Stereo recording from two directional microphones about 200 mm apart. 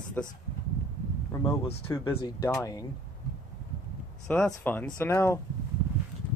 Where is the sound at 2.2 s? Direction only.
15° left (ahead or behind).